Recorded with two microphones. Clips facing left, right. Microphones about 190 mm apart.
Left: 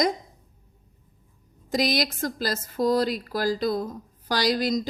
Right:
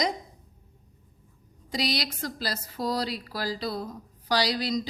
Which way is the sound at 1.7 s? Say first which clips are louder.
Left 5 dB; 45° left (ahead or behind).